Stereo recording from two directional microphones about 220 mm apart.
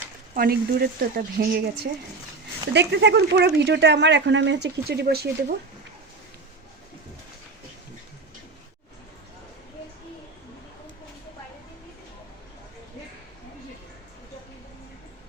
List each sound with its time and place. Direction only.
0.3 s speech: 45° right (ahead or behind)